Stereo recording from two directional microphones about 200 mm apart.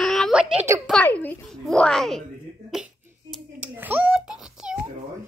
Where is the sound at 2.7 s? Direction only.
5° right (ahead or behind).